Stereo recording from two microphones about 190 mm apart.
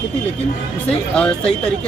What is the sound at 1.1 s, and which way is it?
Speech, 5° left (ahead or behind).